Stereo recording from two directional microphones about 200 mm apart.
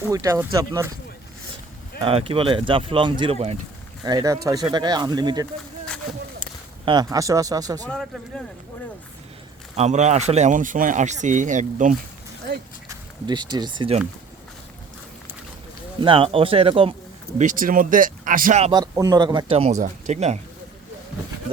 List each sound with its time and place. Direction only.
0.1 s speech: 15° right (ahead or behind)
2.0 s speech: 30° right (ahead or behind)
4.0 s speech: 20° right (ahead or behind)
7.9 s speech: centre (ahead or behind)
9.7 s speech: 35° right (ahead or behind)
13.2 s speech: 20° right (ahead or behind)
16.0 s speech: 25° right (ahead or behind)
17.3 s speech: 40° right (ahead or behind)
18.7 s speech: 20° right (ahead or behind); by 20.4 s 35° right (ahead or behind)